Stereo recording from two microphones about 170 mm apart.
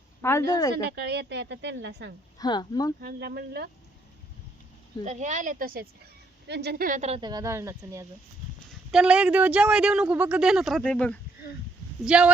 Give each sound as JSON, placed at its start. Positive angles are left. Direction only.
{"t": 0.2, "sound": "a woman's voice", "side_deg": 15}
{"t": 0.9, "sound": "speech", "side_deg": -75}
{"t": 2.4, "sound": "speech", "side_deg": 25}
{"t": 3.0, "sound": "speech", "side_deg": -65}
{"t": 5.0, "sound": "speech", "side_deg": -45}
{"t": 6.5, "sound": "a woman's voice", "side_deg": -75}
{"t": 7.1, "sound": "speech", "side_deg": -25}
{"t": 8.9, "sound": "speech", "side_deg": -5}
{"t": 12.0, "sound": "speech", "side_deg": -5}